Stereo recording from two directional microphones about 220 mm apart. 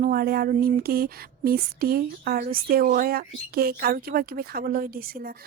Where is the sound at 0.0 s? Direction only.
45° right (ahead or behind).